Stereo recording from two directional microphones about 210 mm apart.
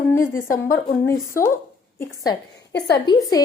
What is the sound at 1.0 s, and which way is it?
Speech, 15° left (ahead or behind).